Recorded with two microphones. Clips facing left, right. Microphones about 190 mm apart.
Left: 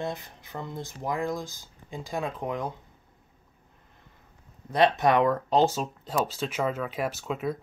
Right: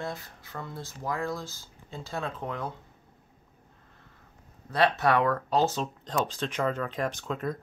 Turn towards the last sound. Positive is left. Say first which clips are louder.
# left 2 dB
turn(degrees=5)  # may be behind; listen again after turning